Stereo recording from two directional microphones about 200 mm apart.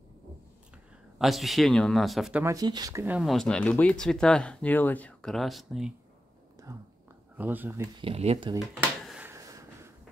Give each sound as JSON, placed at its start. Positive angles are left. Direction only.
{"t": 1.1, "sound": "speech", "side_deg": 0}
{"t": 2.4, "sound": "speech", "side_deg": -20}
{"t": 3.2, "sound": "speech", "side_deg": 0}
{"t": 7.3, "sound": "speech", "side_deg": -10}
{"t": 8.0, "sound": "speech", "side_deg": -30}
{"t": 8.5, "sound": "drawer open or close", "side_deg": 0}
{"t": 9.3, "sound": "a sound", "side_deg": -15}